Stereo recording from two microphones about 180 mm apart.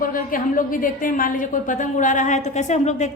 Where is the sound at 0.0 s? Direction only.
50° left (ahead or behind).